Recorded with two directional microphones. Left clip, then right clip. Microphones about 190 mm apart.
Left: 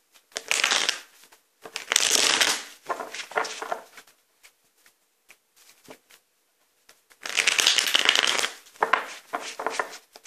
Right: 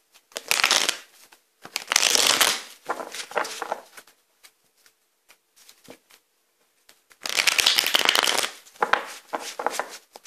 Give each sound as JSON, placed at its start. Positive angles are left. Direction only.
{"t": 0.3, "sound": "crumpling", "side_deg": -30}
{"t": 1.7, "sound": "a sound", "side_deg": -30}
{"t": 7.1, "sound": "shuffling cards", "side_deg": -30}